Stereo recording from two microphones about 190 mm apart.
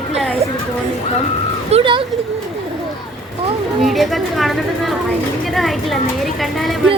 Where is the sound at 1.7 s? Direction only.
30° right (ahead or behind).